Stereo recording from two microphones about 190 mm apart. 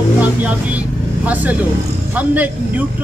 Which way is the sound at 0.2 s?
10° right (ahead or behind).